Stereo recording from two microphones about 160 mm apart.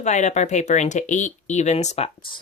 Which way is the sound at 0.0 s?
45° left (ahead or behind).